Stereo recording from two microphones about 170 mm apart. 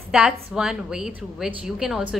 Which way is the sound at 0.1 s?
5° right (ahead or behind).